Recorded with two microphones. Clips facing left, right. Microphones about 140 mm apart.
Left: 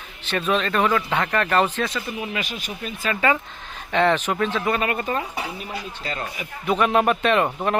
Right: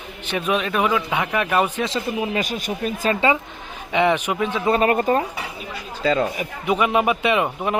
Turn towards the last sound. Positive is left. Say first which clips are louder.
# even
turn(degrees=-5)  # may be behind; listen again after turning